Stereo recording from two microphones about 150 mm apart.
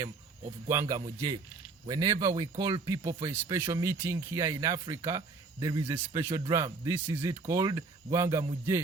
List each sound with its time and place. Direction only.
0.7 s speech: 20° right (ahead or behind)